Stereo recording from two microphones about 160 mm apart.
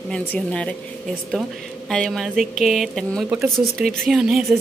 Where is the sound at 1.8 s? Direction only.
5° left (ahead or behind).